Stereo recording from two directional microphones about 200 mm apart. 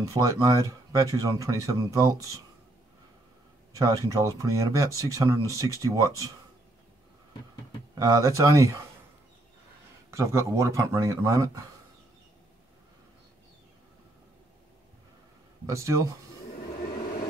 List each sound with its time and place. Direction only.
0.0 s speech: 15° right (ahead or behind)
3.7 s speech: 15° right (ahead or behind)
7.9 s speech: 15° right (ahead or behind)
10.1 s speech: 15° right (ahead or behind)
15.6 s speech: 15° right (ahead or behind)